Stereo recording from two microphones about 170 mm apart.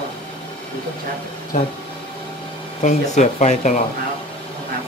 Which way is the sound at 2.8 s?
45° left (ahead or behind).